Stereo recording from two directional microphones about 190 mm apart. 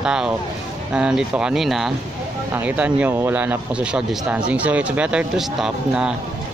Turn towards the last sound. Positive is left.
turn(degrees=-5)  # may be behind; listen again after turning